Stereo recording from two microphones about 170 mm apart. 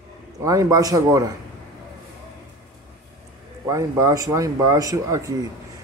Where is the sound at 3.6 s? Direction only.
20° right (ahead or behind).